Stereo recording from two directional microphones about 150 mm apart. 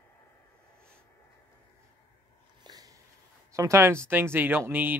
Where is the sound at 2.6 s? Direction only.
25° right (ahead or behind).